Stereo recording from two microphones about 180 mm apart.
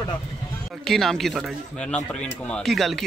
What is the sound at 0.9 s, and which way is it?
A man's voice, centre (ahead or behind).